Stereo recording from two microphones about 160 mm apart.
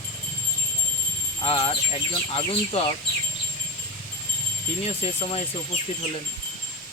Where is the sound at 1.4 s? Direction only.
35° left (ahead or behind).